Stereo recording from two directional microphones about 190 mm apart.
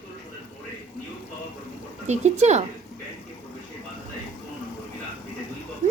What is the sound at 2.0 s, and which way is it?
Speech, 35° right (ahead or behind).